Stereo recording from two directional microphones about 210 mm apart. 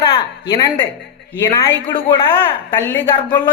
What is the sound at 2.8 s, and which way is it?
Speech, 10° left (ahead or behind).